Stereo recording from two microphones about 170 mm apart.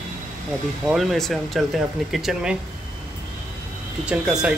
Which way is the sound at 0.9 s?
Centre (ahead or behind).